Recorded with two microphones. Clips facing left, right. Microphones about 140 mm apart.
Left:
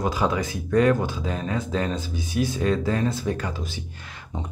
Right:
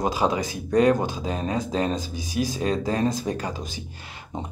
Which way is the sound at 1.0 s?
35° right (ahead or behind).